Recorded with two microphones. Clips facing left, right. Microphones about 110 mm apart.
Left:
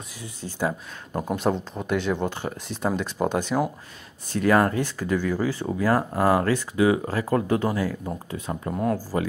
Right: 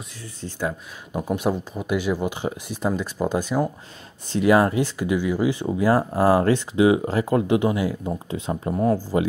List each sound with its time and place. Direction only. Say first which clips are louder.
0.2 s speech: left 1 dB; 10° left (ahead or behind)
1.3 s speech: right 1 dB; 10° right (ahead or behind)